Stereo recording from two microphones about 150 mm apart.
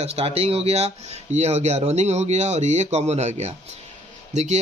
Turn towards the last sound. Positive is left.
turn(degrees=-50)  # may be behind; listen again after turning